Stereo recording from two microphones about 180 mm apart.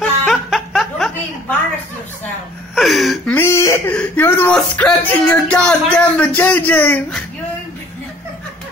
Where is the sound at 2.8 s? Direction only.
Centre (ahead or behind).